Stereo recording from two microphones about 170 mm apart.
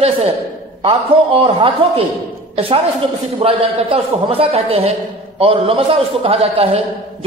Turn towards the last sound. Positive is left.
turn(degrees=-35)  # may be behind; listen again after turning